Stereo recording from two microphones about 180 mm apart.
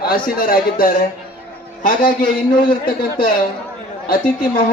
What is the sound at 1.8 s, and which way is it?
A man's voice, 55° left (ahead or behind).